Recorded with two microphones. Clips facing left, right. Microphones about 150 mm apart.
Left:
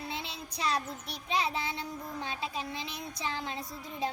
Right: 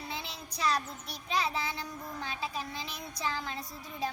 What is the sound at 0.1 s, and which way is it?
Child singing, 25° left (ahead or behind).